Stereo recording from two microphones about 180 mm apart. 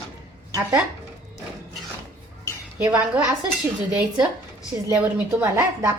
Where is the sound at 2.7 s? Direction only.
20° right (ahead or behind).